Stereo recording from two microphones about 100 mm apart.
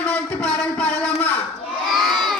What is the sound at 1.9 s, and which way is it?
Children shouting, centre (ahead or behind).